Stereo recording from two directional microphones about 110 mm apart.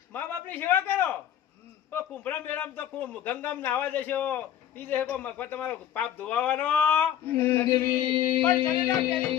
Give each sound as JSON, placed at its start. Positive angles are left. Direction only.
{"t": 0.1, "sound": "a sound", "side_deg": 15}
{"t": 1.9, "sound": "a man's voice", "side_deg": 15}
{"t": 7.9, "sound": "mantra", "side_deg": -50}
{"t": 8.9, "sound": "a man's voice", "side_deg": 15}